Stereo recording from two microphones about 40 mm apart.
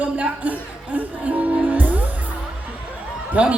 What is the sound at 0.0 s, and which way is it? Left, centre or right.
Music, right.